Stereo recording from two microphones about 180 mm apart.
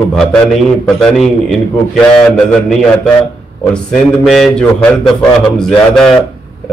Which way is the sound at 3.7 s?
5° left (ahead or behind).